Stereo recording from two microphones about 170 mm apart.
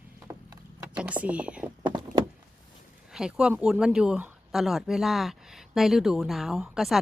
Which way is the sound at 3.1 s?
5° right (ahead or behind).